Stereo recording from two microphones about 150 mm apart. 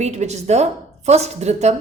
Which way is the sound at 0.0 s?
50° right (ahead or behind).